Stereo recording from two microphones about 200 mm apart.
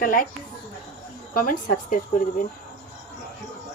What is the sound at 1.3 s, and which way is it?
A woman's voice, 40° left (ahead or behind).